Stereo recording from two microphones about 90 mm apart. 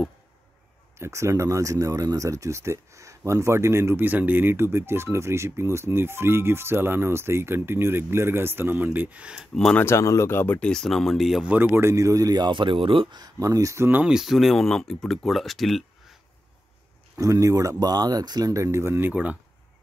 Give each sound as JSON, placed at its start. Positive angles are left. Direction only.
{"t": 0.9, "sound": "speech", "side_deg": -30}
{"t": 9.8, "sound": "speech", "side_deg": 35}
{"t": 10.7, "sound": "speech", "side_deg": 5}
{"t": 11.4, "sound": "speech", "side_deg": -20}
{"t": 13.2, "sound": "speech", "side_deg": -40}
{"t": 14.0, "sound": "speech", "side_deg": -5}
{"t": 17.2, "sound": "speech", "side_deg": -35}